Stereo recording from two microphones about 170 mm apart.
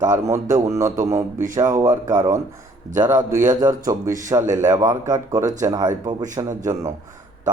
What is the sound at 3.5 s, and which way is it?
Speech, 20° right (ahead or behind).